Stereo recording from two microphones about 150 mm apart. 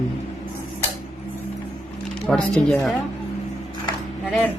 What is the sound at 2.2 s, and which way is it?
Speech, 5° left (ahead or behind).